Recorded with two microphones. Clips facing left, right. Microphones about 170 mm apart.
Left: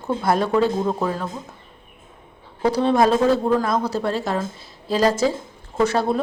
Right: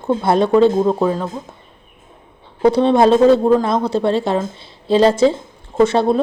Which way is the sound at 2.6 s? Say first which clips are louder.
Right 5 dB; 25° right (ahead or behind).